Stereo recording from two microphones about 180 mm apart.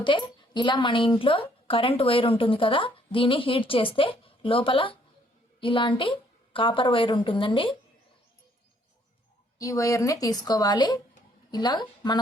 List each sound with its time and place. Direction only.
0.0 s a woman's voice: 25° left (ahead or behind)
9.6 s a woman's voice: 20° left (ahead or behind)